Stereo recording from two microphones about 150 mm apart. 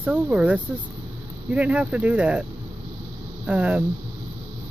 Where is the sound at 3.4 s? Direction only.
10° right (ahead or behind).